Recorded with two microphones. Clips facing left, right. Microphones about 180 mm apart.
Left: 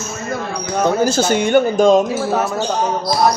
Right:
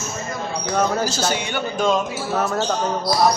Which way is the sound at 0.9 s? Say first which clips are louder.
Left 7 dB; 55° left (ahead or behind).